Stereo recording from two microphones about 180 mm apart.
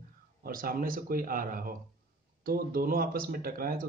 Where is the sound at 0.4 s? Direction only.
50° right (ahead or behind).